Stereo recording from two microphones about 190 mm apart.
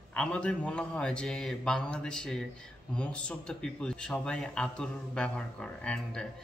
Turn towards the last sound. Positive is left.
turn(degrees=5)  # may be behind; listen again after turning